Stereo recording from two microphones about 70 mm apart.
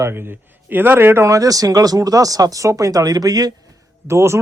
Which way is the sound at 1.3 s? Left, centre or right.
Right.